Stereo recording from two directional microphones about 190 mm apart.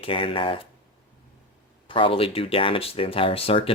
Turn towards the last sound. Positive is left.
turn(degrees=30)  # may be behind; listen again after turning